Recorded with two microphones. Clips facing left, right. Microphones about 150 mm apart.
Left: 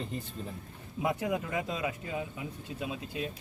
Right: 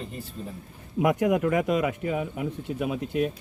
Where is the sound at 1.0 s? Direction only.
70° right (ahead or behind).